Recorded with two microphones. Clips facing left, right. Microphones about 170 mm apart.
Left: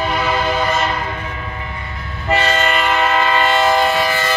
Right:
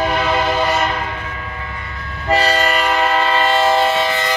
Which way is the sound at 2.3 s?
35° right (ahead or behind).